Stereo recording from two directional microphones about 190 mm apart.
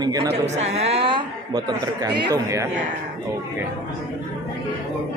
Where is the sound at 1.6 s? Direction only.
20° right (ahead or behind).